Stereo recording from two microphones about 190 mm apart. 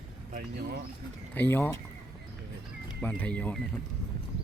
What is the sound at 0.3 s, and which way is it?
Speech, 55° right (ahead or behind).